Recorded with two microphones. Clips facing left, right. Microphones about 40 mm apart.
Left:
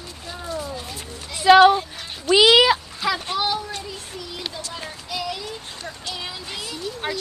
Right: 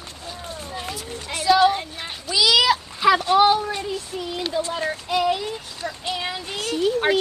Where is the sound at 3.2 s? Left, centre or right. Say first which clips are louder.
Right 8 dB; right.